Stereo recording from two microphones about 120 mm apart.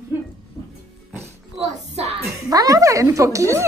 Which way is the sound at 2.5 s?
30° right (ahead or behind).